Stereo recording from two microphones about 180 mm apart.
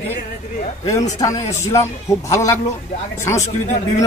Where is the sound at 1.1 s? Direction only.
20° left (ahead or behind).